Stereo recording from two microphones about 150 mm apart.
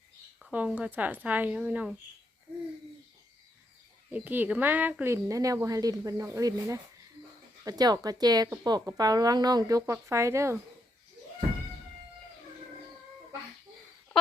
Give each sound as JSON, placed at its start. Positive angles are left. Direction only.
{"t": 0.3, "sound": "speech", "side_deg": -5}
{"t": 4.1, "sound": "speech", "side_deg": -10}